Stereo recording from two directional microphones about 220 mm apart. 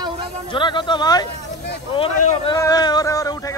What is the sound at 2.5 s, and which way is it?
Speech, 15° left (ahead or behind).